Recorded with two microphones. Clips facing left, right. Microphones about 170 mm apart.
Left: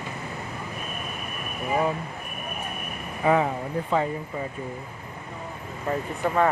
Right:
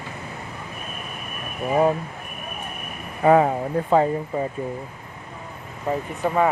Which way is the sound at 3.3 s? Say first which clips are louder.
Right 6 dB; 45° right (ahead or behind).